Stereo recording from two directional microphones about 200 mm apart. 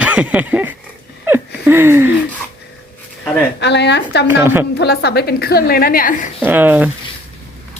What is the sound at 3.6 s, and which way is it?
Speech, 60° left (ahead or behind).